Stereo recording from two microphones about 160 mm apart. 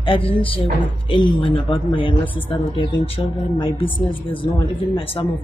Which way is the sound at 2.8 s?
35° left (ahead or behind).